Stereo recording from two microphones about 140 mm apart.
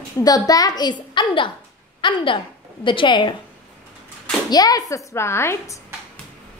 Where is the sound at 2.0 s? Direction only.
35° left (ahead or behind).